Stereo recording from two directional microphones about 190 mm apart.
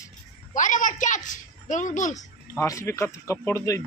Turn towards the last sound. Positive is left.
turn(degrees=15)  # may be behind; listen again after turning